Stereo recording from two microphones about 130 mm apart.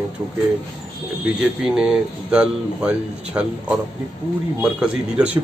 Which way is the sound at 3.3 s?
15° right (ahead or behind).